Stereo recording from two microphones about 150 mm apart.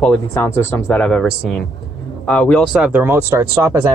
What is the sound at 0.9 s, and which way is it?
Speech, 5° left (ahead or behind).